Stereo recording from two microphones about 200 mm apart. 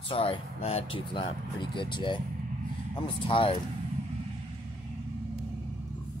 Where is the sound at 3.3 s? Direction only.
25° left (ahead or behind).